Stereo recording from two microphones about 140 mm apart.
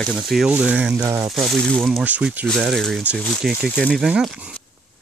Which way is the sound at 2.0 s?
10° right (ahead or behind).